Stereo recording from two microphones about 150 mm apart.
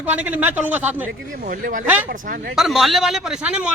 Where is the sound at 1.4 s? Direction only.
65° right (ahead or behind).